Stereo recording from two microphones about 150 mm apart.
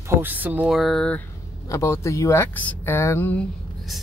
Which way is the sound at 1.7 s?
20° left (ahead or behind).